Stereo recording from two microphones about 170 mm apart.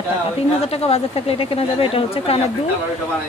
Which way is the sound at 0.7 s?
35° left (ahead or behind).